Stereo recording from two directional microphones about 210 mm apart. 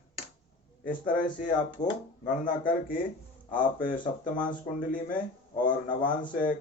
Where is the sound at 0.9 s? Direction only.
40° left (ahead or behind).